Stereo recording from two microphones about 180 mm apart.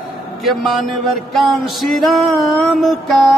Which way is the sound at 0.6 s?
Centre (ahead or behind).